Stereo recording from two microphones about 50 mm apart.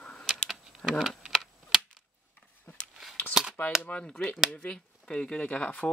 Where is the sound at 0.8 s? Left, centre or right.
Left.